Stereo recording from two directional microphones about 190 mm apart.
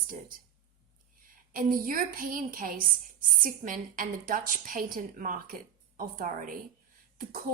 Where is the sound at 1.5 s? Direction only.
50° right (ahead or behind).